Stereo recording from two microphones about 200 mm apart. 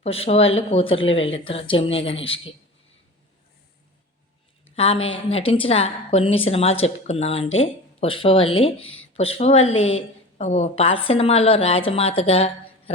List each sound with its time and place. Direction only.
0.0 s a woman's voice: 30° left (ahead or behind)
4.7 s a woman's voice: 30° left (ahead or behind)